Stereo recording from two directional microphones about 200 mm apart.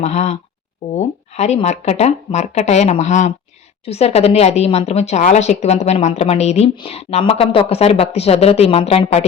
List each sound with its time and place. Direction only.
0.0 s a woman's voice: 35° left (ahead or behind)